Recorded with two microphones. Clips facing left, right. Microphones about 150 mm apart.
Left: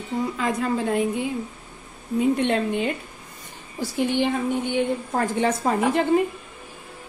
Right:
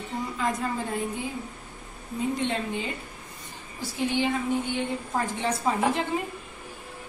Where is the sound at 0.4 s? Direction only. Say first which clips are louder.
Left 2 dB; 70° left (ahead or behind).